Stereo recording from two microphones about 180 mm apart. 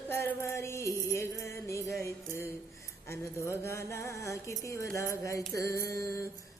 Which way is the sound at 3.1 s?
15° left (ahead or behind).